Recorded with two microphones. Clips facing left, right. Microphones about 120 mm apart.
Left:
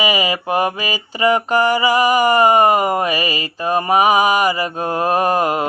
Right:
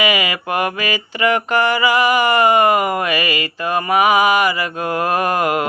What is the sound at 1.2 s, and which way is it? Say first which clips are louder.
Mantra: left 2 dB; 35° left (ahead or behind).